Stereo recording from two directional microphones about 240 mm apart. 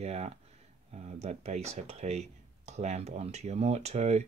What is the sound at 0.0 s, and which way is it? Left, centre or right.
Speech, right.